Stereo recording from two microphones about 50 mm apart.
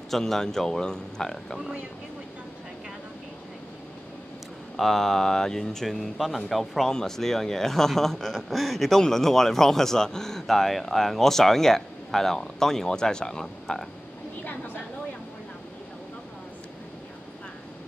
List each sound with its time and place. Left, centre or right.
0.1 s speech: centre
4.7 s speech: centre
14.4 s a sound: left